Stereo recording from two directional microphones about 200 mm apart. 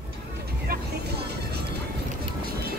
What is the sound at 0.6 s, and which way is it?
Music, 55° right (ahead or behind).